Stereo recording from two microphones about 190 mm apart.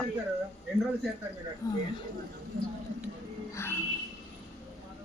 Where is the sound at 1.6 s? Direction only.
20° left (ahead or behind).